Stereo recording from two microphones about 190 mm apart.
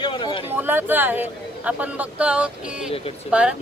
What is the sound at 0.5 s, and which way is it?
Speech, 10° right (ahead or behind).